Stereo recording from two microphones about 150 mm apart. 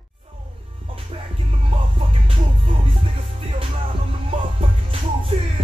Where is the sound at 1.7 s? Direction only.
40° right (ahead or behind).